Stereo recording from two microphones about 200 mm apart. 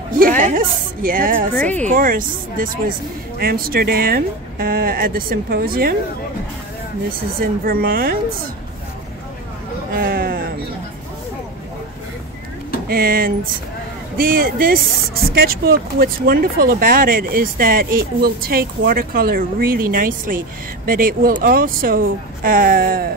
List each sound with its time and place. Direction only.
0.4 s speech: 45° right (ahead or behind)
7.1 s speech: 45° right (ahead or behind)
9.9 s a sound: 50° right (ahead or behind)
12.8 s speech: 50° right (ahead or behind)